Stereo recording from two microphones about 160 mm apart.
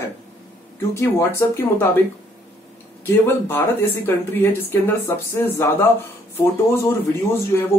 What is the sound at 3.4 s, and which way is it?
Speech, 15° left (ahead or behind).